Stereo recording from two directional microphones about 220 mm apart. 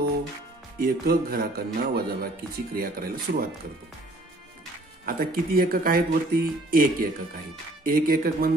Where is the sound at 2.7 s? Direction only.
40° right (ahead or behind).